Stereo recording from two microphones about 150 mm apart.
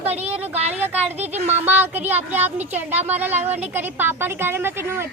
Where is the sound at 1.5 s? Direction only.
15° right (ahead or behind).